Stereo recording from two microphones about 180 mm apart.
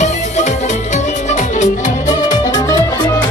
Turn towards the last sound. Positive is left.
turn(degrees=20)  # may be behind; listen again after turning